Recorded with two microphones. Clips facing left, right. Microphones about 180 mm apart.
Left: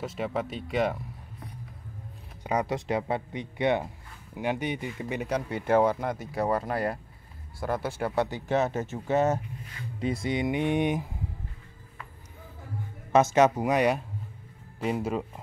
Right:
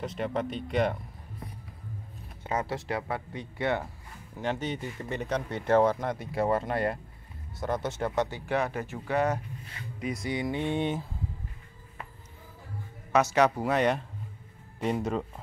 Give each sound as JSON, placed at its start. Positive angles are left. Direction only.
{"t": 0.0, "sound": "speech", "side_deg": 5}
{"t": 2.4, "sound": "speech", "side_deg": 15}
{"t": 8.5, "sound": "speech", "side_deg": 25}
{"t": 13.1, "sound": "speech", "side_deg": 25}